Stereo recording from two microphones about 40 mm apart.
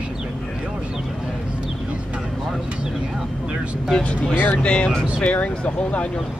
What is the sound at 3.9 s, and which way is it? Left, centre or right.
Speech, left.